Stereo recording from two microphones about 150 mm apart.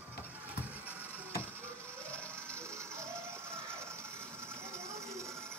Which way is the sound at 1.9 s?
10° left (ahead or behind).